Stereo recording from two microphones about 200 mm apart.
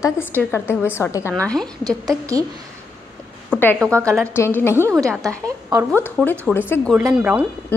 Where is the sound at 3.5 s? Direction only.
10° left (ahead or behind).